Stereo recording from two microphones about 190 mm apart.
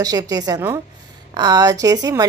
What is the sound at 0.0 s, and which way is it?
A woman's voice, 20° right (ahead or behind).